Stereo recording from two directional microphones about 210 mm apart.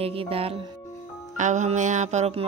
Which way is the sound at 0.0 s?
25° right (ahead or behind).